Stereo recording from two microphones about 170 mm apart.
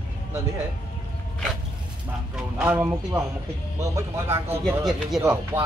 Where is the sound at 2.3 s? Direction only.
5° right (ahead or behind).